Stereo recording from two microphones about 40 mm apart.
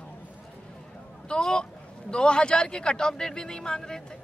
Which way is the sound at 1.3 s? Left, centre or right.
Centre.